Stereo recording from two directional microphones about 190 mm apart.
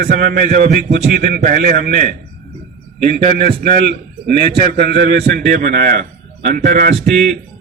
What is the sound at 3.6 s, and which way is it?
A man's voice, 55° right (ahead or behind).